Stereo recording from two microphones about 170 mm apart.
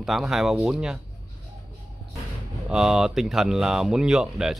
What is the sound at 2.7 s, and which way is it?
Speech, 5° right (ahead or behind).